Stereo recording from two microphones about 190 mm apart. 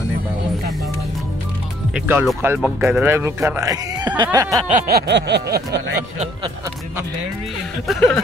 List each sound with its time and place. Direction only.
2.0 s speech: 10° right (ahead or behind)
4.6 s a sound: 45° right (ahead or behind)
7.8 s speech: centre (ahead or behind)